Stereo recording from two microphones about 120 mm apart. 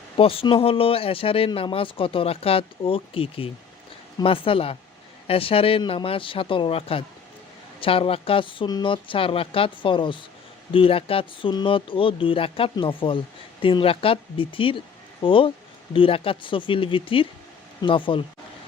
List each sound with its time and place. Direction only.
0.2 s speech: 50° left (ahead or behind)